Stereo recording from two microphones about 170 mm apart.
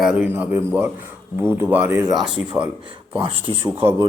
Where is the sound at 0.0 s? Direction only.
5° right (ahead or behind).